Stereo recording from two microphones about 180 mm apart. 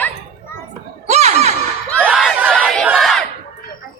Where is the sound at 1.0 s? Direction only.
35° right (ahead or behind).